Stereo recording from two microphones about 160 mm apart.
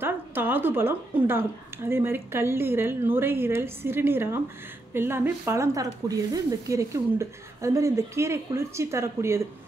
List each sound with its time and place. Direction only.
0.0 s a woman's voice: 15° right (ahead or behind)